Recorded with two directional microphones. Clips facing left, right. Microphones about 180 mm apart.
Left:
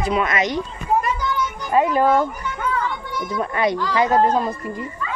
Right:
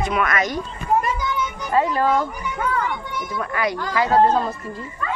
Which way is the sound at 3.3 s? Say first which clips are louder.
Left 4 dB; 25° left (ahead or behind).